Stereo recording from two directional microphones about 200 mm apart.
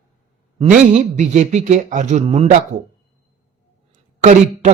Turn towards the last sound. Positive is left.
turn(degrees=-35)  # may be behind; listen again after turning